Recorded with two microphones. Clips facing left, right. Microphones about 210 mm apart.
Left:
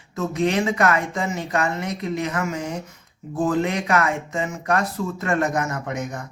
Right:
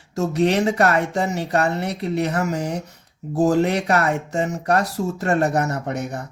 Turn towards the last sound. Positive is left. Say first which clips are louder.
# right 2 dB
turn(degrees=-35)  # may be behind; listen again after turning